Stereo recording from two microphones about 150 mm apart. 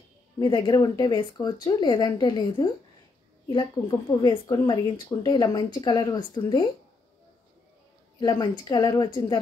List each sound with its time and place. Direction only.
0.4 s speech: 25° left (ahead or behind)
8.2 s speech: 25° left (ahead or behind)